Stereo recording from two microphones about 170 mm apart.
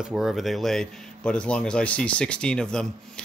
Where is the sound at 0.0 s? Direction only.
5° right (ahead or behind).